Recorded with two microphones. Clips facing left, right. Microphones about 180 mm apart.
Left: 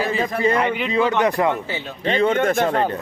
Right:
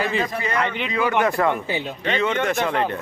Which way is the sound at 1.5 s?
15° right (ahead or behind).